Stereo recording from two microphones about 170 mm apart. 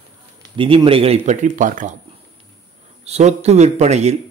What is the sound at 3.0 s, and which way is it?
Speech, 40° right (ahead or behind).